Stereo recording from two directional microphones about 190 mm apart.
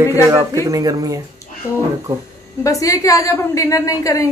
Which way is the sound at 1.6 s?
15° left (ahead or behind).